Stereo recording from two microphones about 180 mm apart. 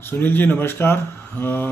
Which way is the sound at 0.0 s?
10° left (ahead or behind).